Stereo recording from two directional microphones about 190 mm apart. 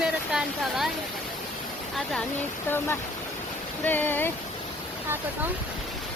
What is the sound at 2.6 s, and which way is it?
Speech, 10° left (ahead or behind).